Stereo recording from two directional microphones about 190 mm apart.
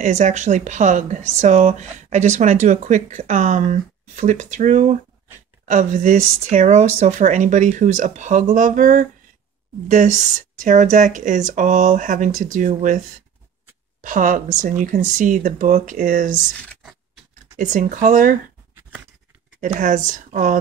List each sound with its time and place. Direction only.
0.0 s speech: 40° right (ahead or behind)
14.0 s speech: 45° right (ahead or behind)
19.6 s speech: 45° right (ahead or behind)